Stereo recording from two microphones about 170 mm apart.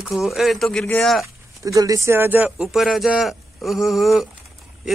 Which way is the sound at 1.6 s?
20° right (ahead or behind).